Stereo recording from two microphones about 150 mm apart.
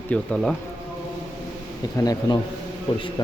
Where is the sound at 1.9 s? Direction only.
25° left (ahead or behind).